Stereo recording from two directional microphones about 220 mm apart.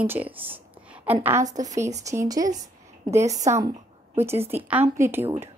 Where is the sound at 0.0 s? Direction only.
10° right (ahead or behind).